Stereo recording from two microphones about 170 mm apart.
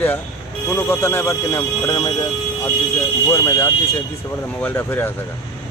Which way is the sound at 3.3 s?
15° left (ahead or behind).